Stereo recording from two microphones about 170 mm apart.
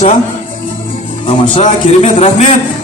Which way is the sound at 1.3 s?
35° left (ahead or behind).